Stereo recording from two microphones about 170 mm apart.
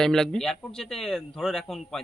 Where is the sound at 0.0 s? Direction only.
5° left (ahead or behind).